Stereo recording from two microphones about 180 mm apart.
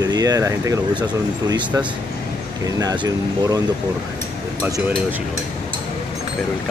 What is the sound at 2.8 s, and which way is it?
Speech, 20° right (ahead or behind).